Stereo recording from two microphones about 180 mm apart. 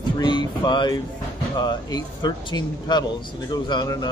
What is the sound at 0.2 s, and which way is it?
A man's voice, 25° left (ahead or behind).